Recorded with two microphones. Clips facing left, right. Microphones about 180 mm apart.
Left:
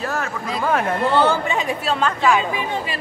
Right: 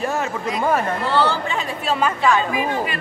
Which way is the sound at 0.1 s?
20° right (ahead or behind).